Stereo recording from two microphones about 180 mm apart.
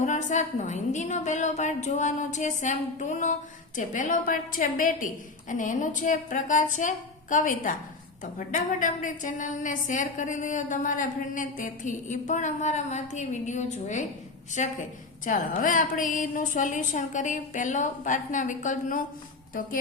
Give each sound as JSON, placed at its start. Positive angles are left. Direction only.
{"t": 0.0, "sound": "a woman's voice", "side_deg": 40}